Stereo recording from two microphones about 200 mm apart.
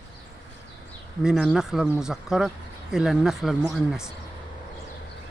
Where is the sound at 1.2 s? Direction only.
5° right (ahead or behind).